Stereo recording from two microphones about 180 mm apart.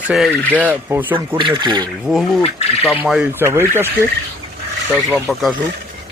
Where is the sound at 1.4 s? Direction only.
25° right (ahead or behind).